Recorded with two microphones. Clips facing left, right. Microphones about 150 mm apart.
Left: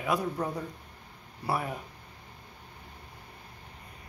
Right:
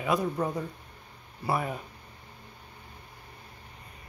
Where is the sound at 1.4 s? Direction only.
5° left (ahead or behind).